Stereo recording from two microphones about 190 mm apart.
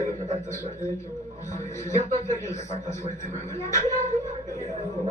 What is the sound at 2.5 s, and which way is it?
Speech, 35° left (ahead or behind).